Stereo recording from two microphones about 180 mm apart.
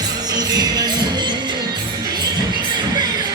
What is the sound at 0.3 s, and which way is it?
Music, 20° right (ahead or behind).